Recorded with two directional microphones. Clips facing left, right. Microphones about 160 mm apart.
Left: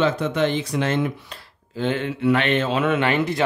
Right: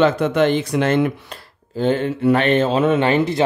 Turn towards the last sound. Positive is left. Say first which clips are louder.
# right 4 dB
turn(degrees=-30)  # may be behind; listen again after turning